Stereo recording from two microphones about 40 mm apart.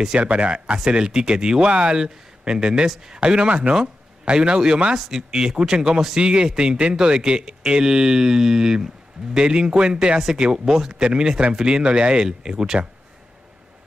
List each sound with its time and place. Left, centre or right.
0.2 s speech: right
0.8 s speech: right
4.9 s speech: centre